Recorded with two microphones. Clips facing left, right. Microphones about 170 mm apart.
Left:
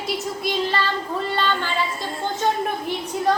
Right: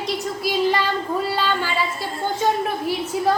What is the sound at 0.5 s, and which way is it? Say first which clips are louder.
Child singing: right 4 dB; 10° right (ahead or behind).